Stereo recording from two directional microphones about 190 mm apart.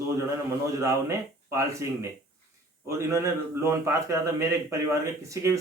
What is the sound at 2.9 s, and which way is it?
Speech, 15° right (ahead or behind).